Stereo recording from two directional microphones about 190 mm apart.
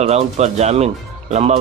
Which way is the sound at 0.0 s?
35° right (ahead or behind).